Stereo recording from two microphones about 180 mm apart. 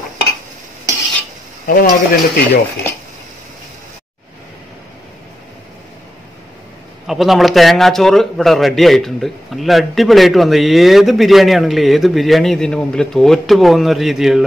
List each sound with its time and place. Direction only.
1.7 s speech: 50° left (ahead or behind)
7.1 s a man's voice: centre (ahead or behind)